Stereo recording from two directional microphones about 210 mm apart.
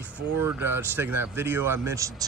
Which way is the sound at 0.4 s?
10° right (ahead or behind).